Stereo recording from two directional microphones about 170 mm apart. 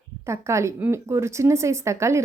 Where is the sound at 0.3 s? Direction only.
15° right (ahead or behind).